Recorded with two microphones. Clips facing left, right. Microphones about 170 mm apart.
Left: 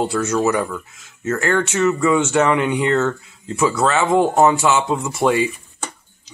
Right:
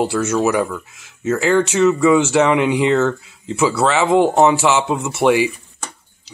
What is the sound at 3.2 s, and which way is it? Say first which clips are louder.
Speech: right 3 dB; 90° right.